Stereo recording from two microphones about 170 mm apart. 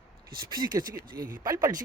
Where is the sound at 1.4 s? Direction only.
20° right (ahead or behind).